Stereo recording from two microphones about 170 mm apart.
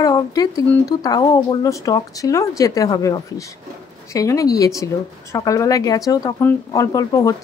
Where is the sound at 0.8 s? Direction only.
20° left (ahead or behind).